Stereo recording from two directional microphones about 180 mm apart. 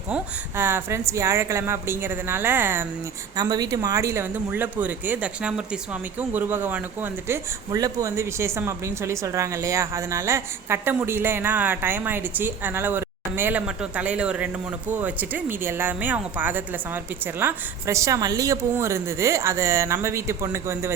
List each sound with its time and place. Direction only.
0.1 s speech: 10° right (ahead or behind)